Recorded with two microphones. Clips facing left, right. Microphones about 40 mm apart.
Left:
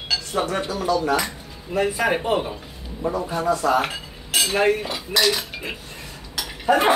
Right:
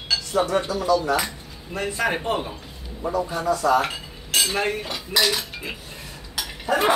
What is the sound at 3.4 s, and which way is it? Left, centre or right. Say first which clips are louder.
Speech: even; left.